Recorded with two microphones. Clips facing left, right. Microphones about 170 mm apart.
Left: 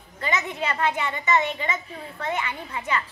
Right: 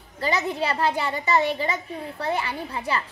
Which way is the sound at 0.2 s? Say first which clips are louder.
Right 3 dB; 35° right (ahead or behind).